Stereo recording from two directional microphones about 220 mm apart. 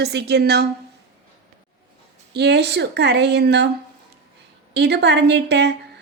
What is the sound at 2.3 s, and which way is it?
Speech, 50° right (ahead or behind).